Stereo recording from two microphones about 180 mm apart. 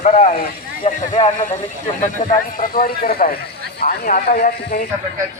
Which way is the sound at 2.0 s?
45° left (ahead or behind).